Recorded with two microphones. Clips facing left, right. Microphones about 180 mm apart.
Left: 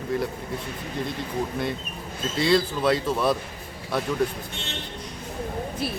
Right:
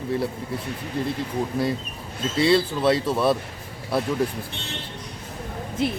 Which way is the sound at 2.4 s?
30° right (ahead or behind).